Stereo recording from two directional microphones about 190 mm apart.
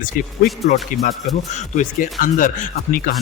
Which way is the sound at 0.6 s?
35° left (ahead or behind).